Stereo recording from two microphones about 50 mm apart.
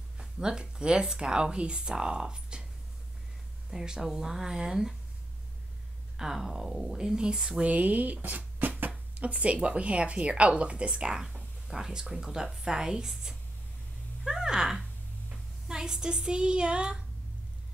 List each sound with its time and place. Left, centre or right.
0.2 s a woman's voice: centre
3.7 s a woman's voice: centre
6.1 s a woman's voice: centre
7.6 s speech: right
9.1 s a woman's voice: right